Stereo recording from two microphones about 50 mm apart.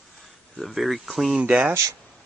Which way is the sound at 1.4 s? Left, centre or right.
Right.